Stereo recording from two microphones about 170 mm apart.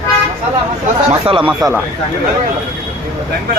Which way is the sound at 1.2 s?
30° right (ahead or behind).